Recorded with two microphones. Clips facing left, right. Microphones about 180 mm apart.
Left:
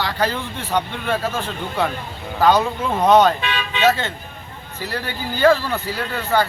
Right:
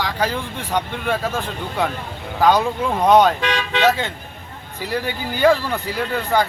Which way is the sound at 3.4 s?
90° right.